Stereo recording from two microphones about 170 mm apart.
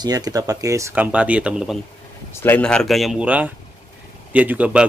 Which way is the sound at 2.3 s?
10° left (ahead or behind).